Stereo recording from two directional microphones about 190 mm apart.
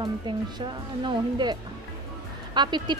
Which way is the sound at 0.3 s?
25° right (ahead or behind).